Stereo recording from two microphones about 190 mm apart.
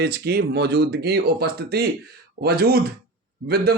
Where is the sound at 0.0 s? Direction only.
55° right (ahead or behind).